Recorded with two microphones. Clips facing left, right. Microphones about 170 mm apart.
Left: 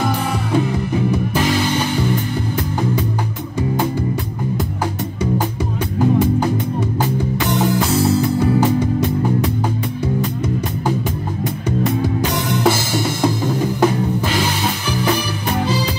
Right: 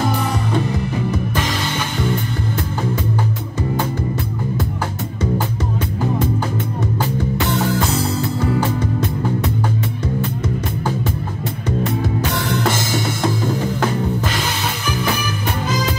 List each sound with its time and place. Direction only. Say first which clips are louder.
7.4 s music: left 3 dB; 15° left (ahead or behind)